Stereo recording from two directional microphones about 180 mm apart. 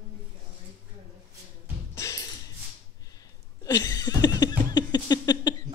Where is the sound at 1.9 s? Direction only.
15° left (ahead or behind).